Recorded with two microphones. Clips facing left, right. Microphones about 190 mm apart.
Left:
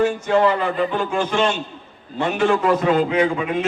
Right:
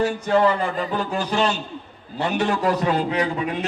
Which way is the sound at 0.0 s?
40° right (ahead or behind).